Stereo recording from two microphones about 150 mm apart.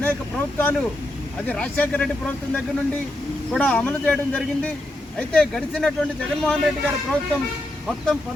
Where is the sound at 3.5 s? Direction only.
5° left (ahead or behind).